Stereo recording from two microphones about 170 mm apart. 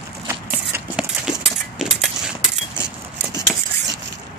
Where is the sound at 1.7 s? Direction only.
Centre (ahead or behind).